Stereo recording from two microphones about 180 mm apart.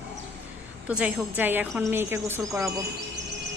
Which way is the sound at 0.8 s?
10° right (ahead or behind).